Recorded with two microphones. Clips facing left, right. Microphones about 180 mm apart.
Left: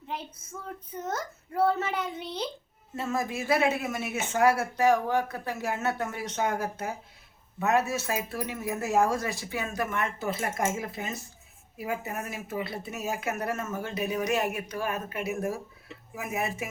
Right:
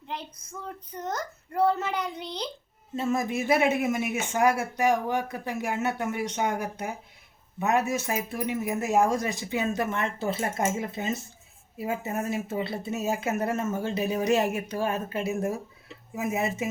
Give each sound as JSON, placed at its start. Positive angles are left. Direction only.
{"t": 0.1, "sound": "a child's voice", "side_deg": 5}
{"t": 2.9, "sound": "speech", "side_deg": -20}